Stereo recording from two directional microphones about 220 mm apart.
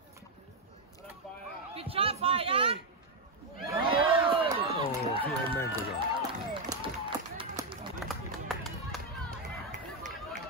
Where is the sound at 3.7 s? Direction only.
20° right (ahead or behind).